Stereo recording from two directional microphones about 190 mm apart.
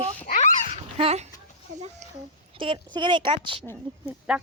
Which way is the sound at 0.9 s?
35° right (ahead or behind).